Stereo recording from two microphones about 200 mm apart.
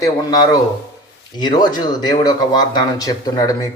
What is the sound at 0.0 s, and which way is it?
A man's voice, 20° left (ahead or behind).